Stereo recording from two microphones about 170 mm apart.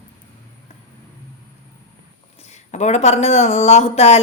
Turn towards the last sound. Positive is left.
turn(degrees=40)  # may be behind; listen again after turning